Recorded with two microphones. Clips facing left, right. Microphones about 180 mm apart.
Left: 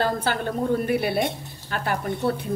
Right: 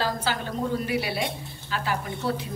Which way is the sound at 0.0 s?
55° left (ahead or behind).